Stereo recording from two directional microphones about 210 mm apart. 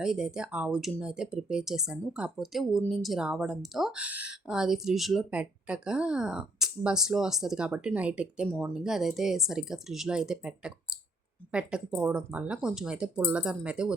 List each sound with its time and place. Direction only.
0.0 s speech: 5° right (ahead or behind)